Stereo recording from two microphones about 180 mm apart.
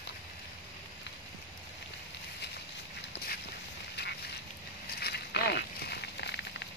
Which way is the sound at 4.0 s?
70° left (ahead or behind).